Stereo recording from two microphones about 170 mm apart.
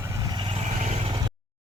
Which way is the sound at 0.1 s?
20° right (ahead or behind).